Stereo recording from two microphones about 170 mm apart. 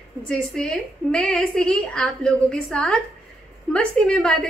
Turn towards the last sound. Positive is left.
turn(degrees=5)  # may be behind; listen again after turning